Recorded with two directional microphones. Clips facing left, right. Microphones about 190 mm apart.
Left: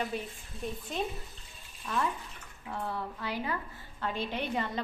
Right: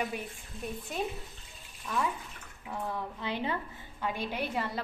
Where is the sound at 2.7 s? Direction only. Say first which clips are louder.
Even; 20° right (ahead or behind).